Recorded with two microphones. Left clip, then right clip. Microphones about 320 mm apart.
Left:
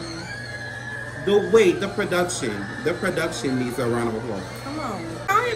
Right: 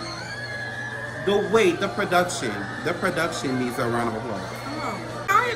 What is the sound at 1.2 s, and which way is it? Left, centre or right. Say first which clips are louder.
A man's voice: left 3 dB; centre.